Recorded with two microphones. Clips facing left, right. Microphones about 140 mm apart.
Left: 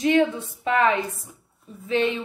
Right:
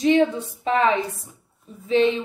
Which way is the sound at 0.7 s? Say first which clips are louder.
Right 1 dB; 30° right (ahead or behind).